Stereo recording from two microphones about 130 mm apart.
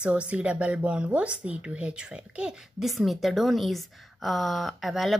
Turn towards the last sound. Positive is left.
turn(degrees=0)  # may be behind; listen again after turning